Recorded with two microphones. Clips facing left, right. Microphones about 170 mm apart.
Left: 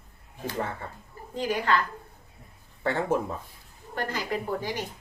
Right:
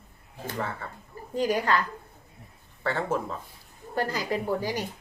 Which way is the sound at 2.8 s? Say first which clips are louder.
Left 2 dB; 20° left (ahead or behind).